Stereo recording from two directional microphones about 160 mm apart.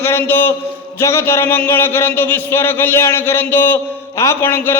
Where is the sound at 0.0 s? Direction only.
15° left (ahead or behind).